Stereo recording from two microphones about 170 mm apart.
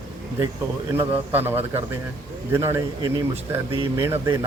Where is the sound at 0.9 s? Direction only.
10° right (ahead or behind).